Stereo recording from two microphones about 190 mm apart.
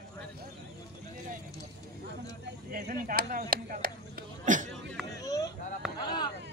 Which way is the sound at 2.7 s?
45° right (ahead or behind).